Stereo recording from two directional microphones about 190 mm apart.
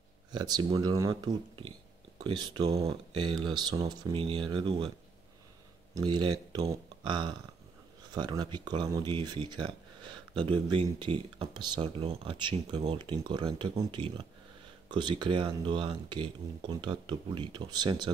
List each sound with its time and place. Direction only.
0.3 s speech: 20° right (ahead or behind)
5.9 s speech: 25° right (ahead or behind)